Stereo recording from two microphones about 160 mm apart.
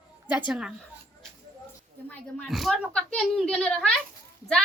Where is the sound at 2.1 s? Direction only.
5° left (ahead or behind).